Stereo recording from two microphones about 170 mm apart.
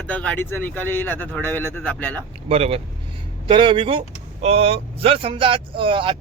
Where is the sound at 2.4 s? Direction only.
35° right (ahead or behind).